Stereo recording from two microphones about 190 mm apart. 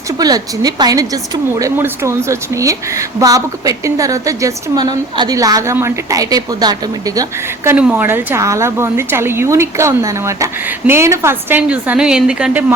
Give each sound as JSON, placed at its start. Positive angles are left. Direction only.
{"t": 0.2, "sound": "a woman's voice", "side_deg": -20}